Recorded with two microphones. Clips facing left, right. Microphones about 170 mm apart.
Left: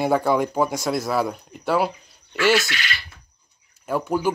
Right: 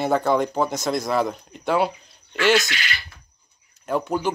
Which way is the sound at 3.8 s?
10° left (ahead or behind).